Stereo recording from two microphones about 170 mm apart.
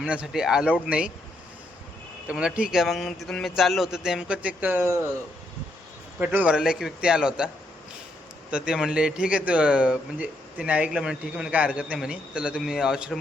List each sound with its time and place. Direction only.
0.0 s speech: 5° right (ahead or behind)
2.2 s speech: 5° right (ahead or behind)
6.1 s speech: 10° right (ahead or behind)